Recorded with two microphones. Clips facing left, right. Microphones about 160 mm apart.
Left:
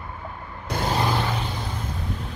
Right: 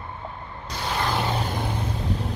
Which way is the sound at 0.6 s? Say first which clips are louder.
Left 5 dB; 50° left (ahead or behind).